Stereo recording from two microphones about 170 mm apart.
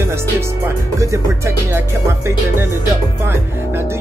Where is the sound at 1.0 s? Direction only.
15° right (ahead or behind).